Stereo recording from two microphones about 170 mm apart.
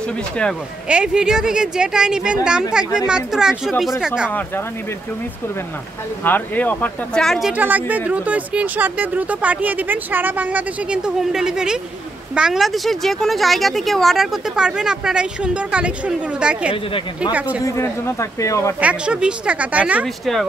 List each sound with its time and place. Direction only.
0.8 s a woman's voice: 5° right (ahead or behind)
6.2 s a woman's voice: 10° left (ahead or behind); by 17.6 s 10° right (ahead or behind)
17.6 s speech: 15° left (ahead or behind)
18.8 s speech: 5° right (ahead or behind)